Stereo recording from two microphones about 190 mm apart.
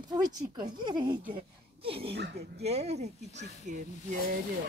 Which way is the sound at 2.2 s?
60° right (ahead or behind).